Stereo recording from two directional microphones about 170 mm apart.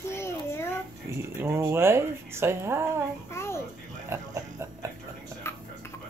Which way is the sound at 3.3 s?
15° left (ahead or behind).